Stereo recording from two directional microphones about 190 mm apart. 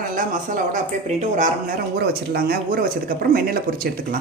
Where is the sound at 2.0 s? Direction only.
55° right (ahead or behind).